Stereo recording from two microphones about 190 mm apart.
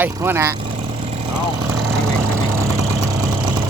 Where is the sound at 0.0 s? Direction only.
10° right (ahead or behind).